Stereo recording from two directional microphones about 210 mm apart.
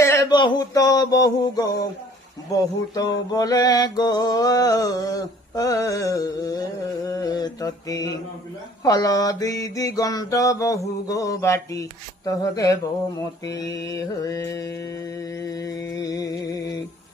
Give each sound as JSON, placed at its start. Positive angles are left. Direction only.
{"t": 0.0, "sound": "a sound", "side_deg": 15}
{"t": 2.5, "sound": "mantra", "side_deg": 15}
{"t": 13.5, "sound": "mantra", "side_deg": 15}